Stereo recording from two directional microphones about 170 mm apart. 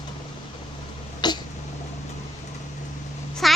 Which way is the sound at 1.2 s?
25° left (ahead or behind).